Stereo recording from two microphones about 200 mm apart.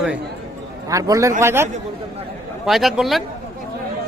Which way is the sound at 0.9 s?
15° right (ahead or behind).